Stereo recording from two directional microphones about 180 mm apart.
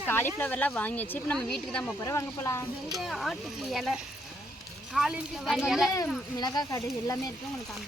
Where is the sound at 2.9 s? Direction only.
Centre (ahead or behind).